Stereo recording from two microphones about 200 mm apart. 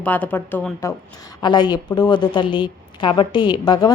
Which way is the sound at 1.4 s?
20° left (ahead or behind).